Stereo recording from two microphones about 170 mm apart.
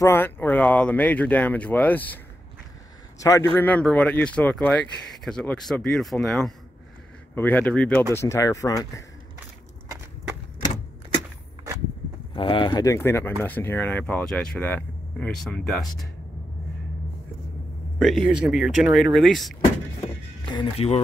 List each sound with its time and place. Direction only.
0.0 s speech: 15° left (ahead or behind)
3.2 s a man's voice: 20° left (ahead or behind)
12.4 s speech: 30° left (ahead or behind); by 16.1 s centre (ahead or behind)
17.9 s speech: centre (ahead or behind)
20.4 s speech: 30° left (ahead or behind)